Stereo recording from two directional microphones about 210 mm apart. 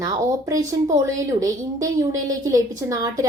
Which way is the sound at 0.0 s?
15° right (ahead or behind).